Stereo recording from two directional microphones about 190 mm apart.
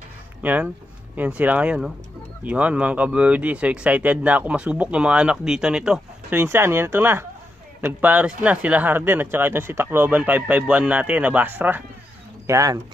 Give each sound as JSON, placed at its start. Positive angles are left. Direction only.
{"t": 0.4, "sound": "speech", "side_deg": -10}